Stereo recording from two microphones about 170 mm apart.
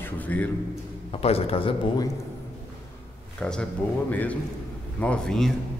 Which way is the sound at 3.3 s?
5° left (ahead or behind).